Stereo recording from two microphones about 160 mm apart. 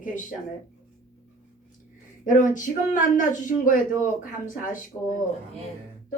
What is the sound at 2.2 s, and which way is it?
A woman's voice, 50° left (ahead or behind).